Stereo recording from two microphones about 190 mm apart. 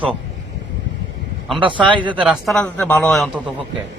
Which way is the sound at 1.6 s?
25° right (ahead or behind).